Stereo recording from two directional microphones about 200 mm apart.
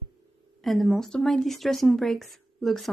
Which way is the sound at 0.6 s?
Centre (ahead or behind).